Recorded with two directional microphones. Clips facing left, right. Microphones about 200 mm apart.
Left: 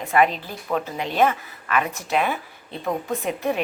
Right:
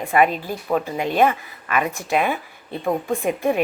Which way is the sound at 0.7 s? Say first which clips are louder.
Right 4 dB; 10° right (ahead or behind).